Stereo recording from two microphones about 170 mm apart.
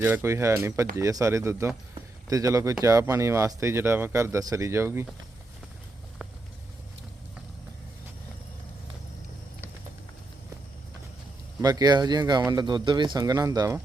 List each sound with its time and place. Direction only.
0.0 s speech: 15° right (ahead or behind)
11.6 s speech: 20° right (ahead or behind)